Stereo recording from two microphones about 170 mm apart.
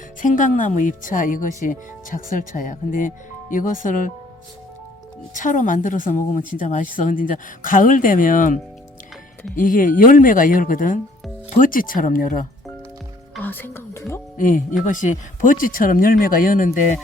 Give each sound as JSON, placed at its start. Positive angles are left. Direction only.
{"t": 0.2, "sound": "speech", "side_deg": 50}
{"t": 5.3, "sound": "speech", "side_deg": 50}
{"t": 9.6, "sound": "speech", "side_deg": 55}
{"t": 13.4, "sound": "speech", "side_deg": 10}
{"t": 14.3, "sound": "speech", "side_deg": 50}